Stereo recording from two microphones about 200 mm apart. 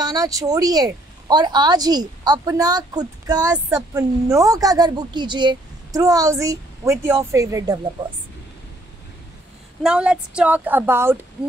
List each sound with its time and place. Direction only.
0.0 s speech: 20° right (ahead or behind)
9.8 s speech: 5° right (ahead or behind)